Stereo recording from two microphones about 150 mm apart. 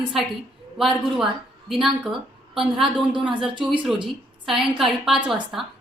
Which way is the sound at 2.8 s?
35° right (ahead or behind).